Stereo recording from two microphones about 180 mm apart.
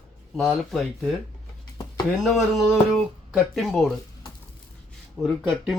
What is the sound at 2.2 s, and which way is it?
Speech, centre (ahead or behind).